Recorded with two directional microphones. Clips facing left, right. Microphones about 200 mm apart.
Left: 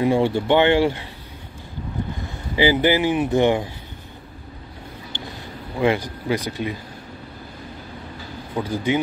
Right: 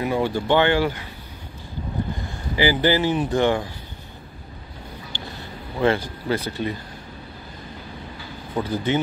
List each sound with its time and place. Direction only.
0.0 s speech: 25° left (ahead or behind)
2.5 s speech: 20° left (ahead or behind)
5.8 s speech: 15° left (ahead or behind)
8.6 s speech: 10° left (ahead or behind)